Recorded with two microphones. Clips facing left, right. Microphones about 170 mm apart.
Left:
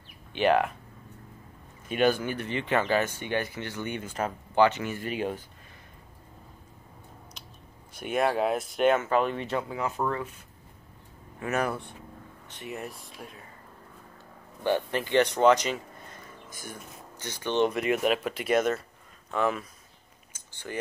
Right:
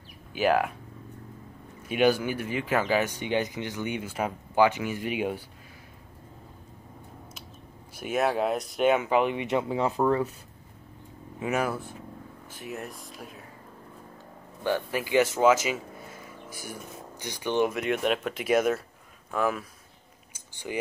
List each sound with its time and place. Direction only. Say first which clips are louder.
0.3 s speech: left 1 dB; 5° right (ahead or behind)
1.9 s speech: right 2 dB; 10° right (ahead or behind)
7.9 s speech: even; 5° right (ahead or behind)
9.0 s speech: right 2 dB; 15° right (ahead or behind); by 10.3 s 35° right (ahead or behind)
11.3 s speech: right 1 dB; 10° right (ahead or behind)
14.9 s speech: even; 10° right (ahead or behind)
20.3 s chewing: right 3 dB; 15° right (ahead or behind)